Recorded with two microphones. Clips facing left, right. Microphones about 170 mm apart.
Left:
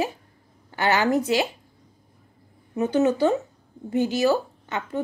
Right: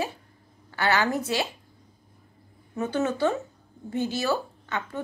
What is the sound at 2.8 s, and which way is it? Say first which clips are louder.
A woman's voice: left 5 dB; 15° left (ahead or behind).